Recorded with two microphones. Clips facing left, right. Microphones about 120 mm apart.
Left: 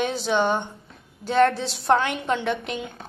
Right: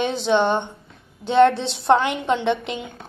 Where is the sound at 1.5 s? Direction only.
20° right (ahead or behind).